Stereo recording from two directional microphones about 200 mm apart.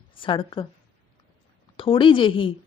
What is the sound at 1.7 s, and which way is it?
Speech, 25° left (ahead or behind).